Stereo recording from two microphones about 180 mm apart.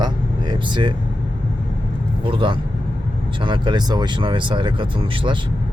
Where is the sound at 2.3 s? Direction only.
30° right (ahead or behind).